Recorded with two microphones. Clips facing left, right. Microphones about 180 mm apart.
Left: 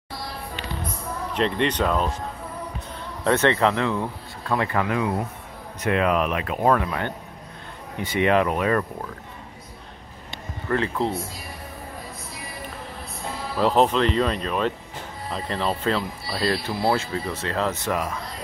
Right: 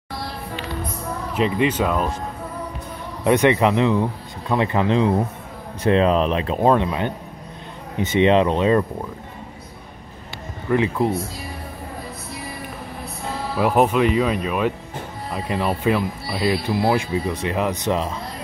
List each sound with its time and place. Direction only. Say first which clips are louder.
1.3 s speech: right 3 dB; 5° right (ahead or behind)
3.3 s speech: right 4 dB; 15° right (ahead or behind)
10.7 s speech: right 4 dB; 15° right (ahead or behind)
13.6 s speech: right 2 dB; 10° right (ahead or behind)